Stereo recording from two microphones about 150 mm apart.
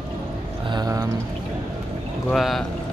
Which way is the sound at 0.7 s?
25° right (ahead or behind).